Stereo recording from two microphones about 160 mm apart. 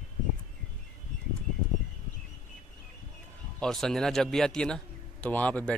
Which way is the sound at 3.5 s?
5° left (ahead or behind).